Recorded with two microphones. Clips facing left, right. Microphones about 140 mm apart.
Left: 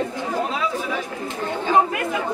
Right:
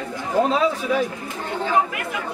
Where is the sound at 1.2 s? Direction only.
30° left (ahead or behind).